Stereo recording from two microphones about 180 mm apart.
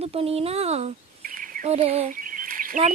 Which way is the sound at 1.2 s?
50° right (ahead or behind).